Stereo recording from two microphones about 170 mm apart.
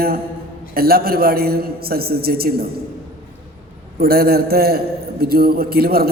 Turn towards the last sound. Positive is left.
turn(degrees=-65)  # may be behind; listen again after turning